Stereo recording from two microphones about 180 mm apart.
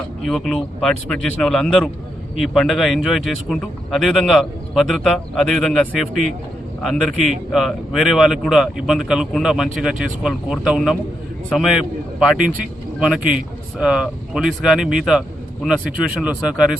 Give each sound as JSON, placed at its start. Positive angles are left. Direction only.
{"t": 0.2, "sound": "speech", "side_deg": 5}